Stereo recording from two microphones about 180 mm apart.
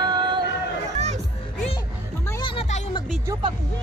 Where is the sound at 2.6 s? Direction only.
30° left (ahead or behind).